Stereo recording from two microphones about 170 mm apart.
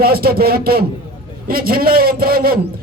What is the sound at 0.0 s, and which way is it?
A man's voice, 60° right (ahead or behind).